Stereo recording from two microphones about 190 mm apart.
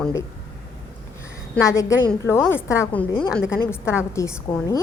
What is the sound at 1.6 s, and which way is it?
A woman's voice, 15° left (ahead or behind).